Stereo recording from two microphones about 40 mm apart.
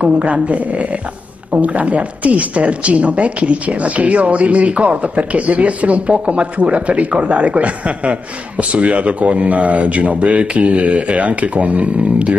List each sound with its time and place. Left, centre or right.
0.0 s a woman's voice: right